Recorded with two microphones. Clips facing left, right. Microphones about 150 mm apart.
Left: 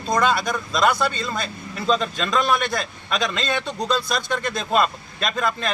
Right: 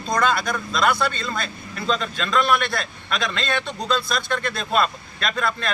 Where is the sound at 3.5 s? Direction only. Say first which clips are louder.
Right 1 dB; 10° left (ahead or behind).